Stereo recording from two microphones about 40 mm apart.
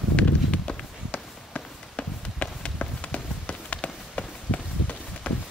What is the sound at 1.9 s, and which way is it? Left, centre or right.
Run, left.